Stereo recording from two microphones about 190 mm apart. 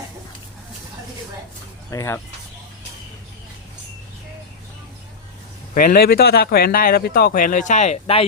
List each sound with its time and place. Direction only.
1.9 s speech: 15° left (ahead or behind)
5.7 s speech: 50° left (ahead or behind); by 8.2 s 35° left (ahead or behind)